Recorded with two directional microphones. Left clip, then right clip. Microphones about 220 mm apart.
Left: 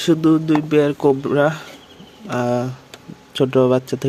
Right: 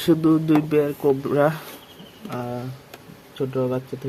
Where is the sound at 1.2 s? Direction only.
10° left (ahead or behind).